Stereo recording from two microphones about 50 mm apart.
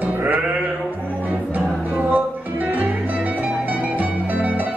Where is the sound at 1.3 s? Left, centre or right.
Right.